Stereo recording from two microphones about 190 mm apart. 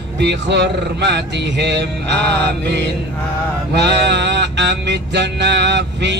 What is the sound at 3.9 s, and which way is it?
Music, 65° right (ahead or behind).